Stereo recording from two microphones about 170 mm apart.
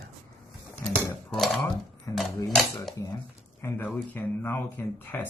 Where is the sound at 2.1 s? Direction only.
20° left (ahead or behind).